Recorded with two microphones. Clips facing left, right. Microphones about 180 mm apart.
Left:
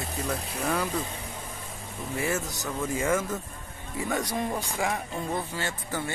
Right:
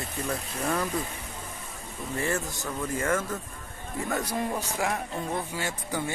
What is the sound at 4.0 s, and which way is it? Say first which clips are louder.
Speech: even; centre (ahead or behind).